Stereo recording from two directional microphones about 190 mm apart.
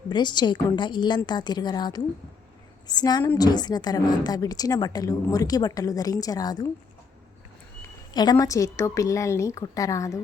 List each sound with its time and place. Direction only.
0.1 s a woman's voice: 25° left (ahead or behind)
8.1 s a woman's voice: 20° left (ahead or behind)